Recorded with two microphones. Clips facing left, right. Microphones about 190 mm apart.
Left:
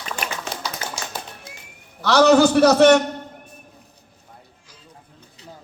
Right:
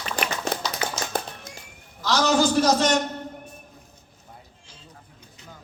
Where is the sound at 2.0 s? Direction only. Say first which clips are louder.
Left 7 dB; 65° left (ahead or behind).